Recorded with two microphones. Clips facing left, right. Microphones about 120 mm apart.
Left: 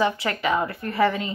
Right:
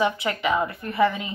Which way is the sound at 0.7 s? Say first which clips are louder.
Right 1 dB; 25° right (ahead or behind).